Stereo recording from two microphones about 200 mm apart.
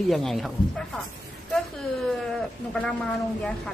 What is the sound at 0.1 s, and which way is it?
Speech, centre (ahead or behind).